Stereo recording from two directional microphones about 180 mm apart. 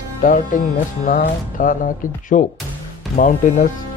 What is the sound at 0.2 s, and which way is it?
Speech, 50° left (ahead or behind).